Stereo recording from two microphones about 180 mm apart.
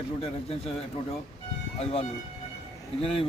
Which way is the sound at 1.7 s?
35° left (ahead or behind).